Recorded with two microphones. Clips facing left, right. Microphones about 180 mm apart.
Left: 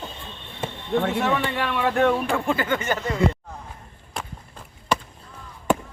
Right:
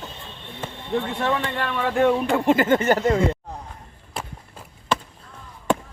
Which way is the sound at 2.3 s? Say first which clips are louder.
Right 5 dB; 20° right (ahead or behind).